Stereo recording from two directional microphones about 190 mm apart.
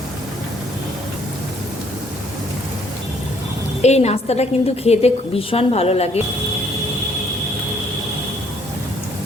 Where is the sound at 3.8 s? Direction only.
35° left (ahead or behind).